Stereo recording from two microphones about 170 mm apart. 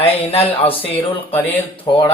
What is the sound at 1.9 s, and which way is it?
Speech, 30° left (ahead or behind).